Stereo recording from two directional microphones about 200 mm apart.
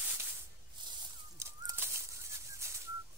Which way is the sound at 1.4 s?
15° right (ahead or behind).